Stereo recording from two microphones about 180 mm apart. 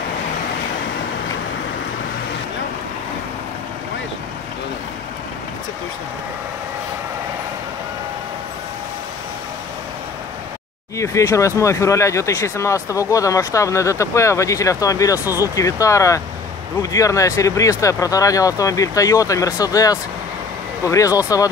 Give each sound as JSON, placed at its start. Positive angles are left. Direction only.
{"t": 11.0, "sound": "speech", "side_deg": 15}
{"t": 15.1, "sound": "speech", "side_deg": -10}
{"t": 15.5, "sound": "speech", "side_deg": 20}